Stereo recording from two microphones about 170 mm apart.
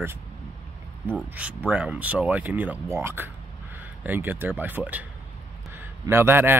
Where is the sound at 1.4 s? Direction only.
10° right (ahead or behind).